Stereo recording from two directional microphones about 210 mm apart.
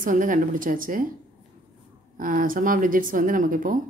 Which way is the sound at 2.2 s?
40° right (ahead or behind).